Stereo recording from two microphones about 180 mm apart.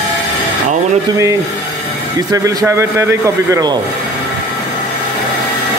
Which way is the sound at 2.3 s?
20° right (ahead or behind).